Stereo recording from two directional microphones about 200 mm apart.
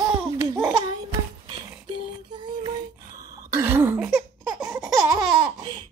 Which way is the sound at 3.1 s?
10° right (ahead or behind).